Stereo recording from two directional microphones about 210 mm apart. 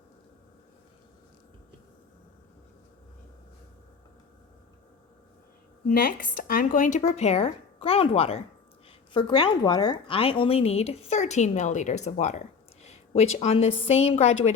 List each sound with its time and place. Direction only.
5.9 s a woman's voice: 45° left (ahead or behind)